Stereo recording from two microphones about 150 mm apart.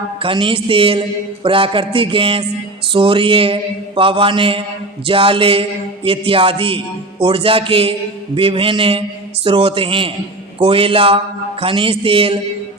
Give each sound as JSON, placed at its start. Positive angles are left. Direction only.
{"t": 0.2, "sound": "a man's voice", "side_deg": -35}